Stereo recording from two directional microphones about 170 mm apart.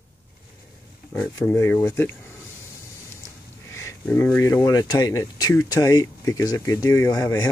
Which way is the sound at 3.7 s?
15° left (ahead or behind).